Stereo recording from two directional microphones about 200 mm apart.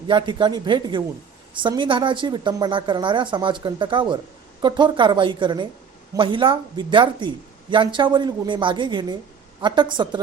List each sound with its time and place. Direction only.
0.1 s speech: 25° right (ahead or behind)